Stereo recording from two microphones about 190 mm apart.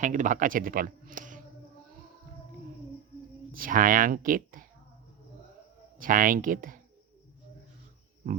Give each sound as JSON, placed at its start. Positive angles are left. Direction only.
{"t": 0.0, "sound": "speech", "side_deg": -40}
{"t": 3.5, "sound": "speech", "side_deg": -45}
{"t": 6.0, "sound": "speech", "side_deg": -45}